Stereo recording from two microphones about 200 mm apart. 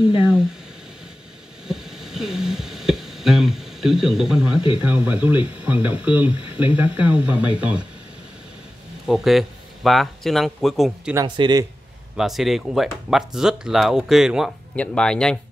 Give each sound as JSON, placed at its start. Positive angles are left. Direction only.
{"t": 1.7, "sound": "a sound", "side_deg": 0}
{"t": 4.8, "sound": "speech", "side_deg": -5}
{"t": 9.0, "sound": "speech", "side_deg": 0}
{"t": 11.1, "sound": "speech", "side_deg": -20}
{"t": 12.2, "sound": "speech", "side_deg": 0}